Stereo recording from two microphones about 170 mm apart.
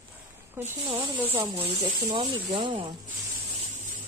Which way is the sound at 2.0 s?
30° right (ahead or behind).